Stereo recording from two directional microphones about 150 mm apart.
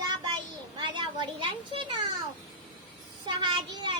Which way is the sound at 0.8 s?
30° right (ahead or behind).